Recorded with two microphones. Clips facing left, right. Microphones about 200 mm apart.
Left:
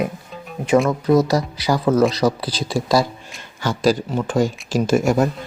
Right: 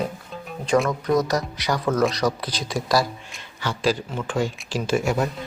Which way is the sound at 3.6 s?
45° left (ahead or behind).